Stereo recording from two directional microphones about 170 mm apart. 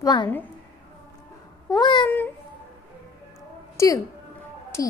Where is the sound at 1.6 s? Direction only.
25° left (ahead or behind).